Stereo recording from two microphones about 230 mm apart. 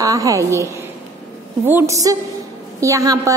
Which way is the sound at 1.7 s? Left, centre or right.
Centre.